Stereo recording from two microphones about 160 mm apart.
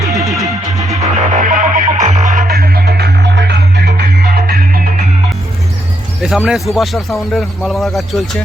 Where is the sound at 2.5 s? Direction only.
75° right (ahead or behind).